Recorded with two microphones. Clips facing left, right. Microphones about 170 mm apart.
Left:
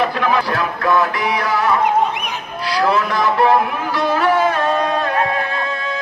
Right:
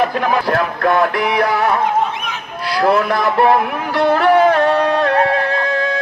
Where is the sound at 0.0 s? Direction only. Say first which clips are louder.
Right 1 dB; 55° right (ahead or behind).